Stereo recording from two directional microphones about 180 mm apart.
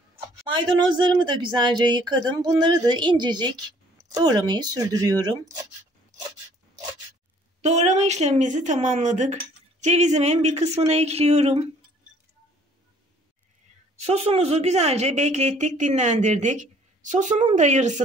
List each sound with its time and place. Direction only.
0.5 s speech: 25° right (ahead or behind)
7.6 s speech: 40° right (ahead or behind)
13.9 s speech: 35° right (ahead or behind)